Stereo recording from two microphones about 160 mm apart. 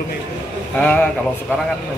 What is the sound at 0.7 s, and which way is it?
Speech, 10° left (ahead or behind).